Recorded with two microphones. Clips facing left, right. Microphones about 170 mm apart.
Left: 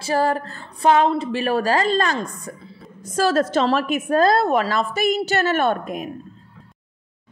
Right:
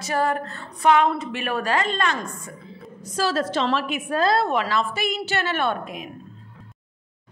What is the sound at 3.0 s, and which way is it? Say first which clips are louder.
A woman's voice: left 5 dB; 50° left (ahead or behind).